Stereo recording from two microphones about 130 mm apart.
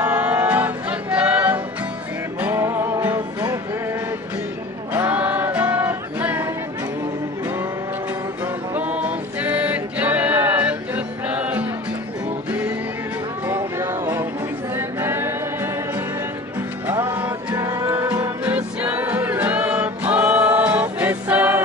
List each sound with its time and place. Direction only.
0.0 s music: 10° right (ahead or behind)
4.9 s music: 10° right (ahead or behind)
8.7 s music: 10° right (ahead or behind)
14.8 s singing: 20° right (ahead or behind)
16.8 s music: 15° right (ahead or behind)
18.4 s music: 10° right (ahead or behind)